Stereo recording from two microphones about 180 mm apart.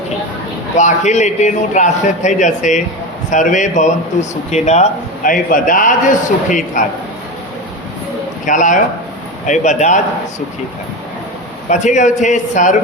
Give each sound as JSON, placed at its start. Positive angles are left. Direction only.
{"t": 0.8, "sound": "a man's voice", "side_deg": 40}
{"t": 8.4, "sound": "a man's voice", "side_deg": 45}
{"t": 11.7, "sound": "a man's voice", "side_deg": 40}